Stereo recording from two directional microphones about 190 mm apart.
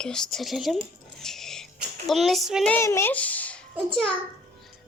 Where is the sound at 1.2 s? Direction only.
Centre (ahead or behind).